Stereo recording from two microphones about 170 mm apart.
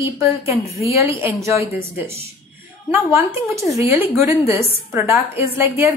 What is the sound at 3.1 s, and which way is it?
A woman's voice, 15° right (ahead or behind).